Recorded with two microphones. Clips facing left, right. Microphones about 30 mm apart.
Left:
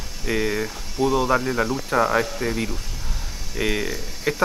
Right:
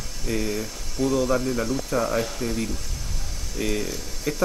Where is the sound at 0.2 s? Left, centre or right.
Left.